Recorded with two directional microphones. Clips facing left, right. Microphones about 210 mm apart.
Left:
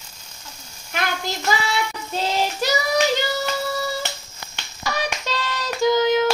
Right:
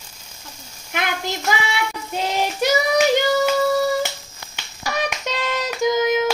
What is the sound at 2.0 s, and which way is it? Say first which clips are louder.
Child singing: even; 15° right (ahead or behind).